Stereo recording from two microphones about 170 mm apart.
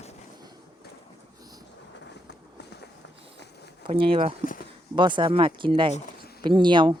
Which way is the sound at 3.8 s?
30° right (ahead or behind).